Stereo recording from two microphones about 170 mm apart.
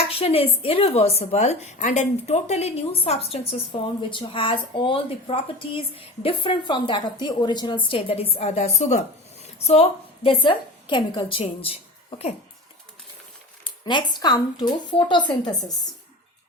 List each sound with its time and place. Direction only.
0.1 s a woman's voice: 35° left (ahead or behind)
10.2 s a woman's voice: 30° left (ahead or behind)
13.7 s a woman's voice: 25° left (ahead or behind)